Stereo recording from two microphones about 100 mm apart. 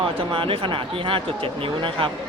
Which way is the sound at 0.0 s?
60° right (ahead or behind).